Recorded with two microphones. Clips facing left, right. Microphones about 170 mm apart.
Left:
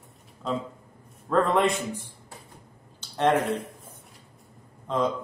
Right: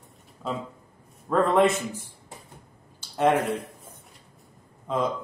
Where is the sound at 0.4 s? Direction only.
5° right (ahead or behind).